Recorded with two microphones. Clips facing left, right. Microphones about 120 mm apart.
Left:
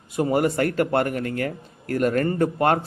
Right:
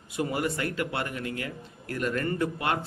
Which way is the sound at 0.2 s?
45° left (ahead or behind).